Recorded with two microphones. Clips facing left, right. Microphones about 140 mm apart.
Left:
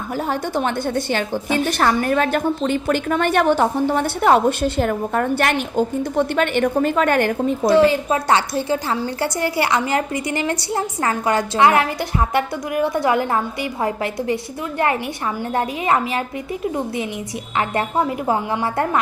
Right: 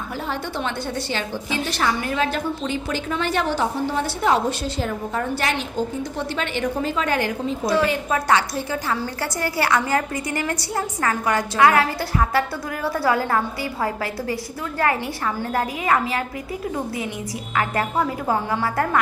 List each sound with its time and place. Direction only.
0.3 s a woman's voice: 45° left (ahead or behind)
7.7 s a woman's voice: 25° left (ahead or behind)
15.4 s a woman's voice: 25° left (ahead or behind)
17.6 s a woman's voice: 20° left (ahead or behind)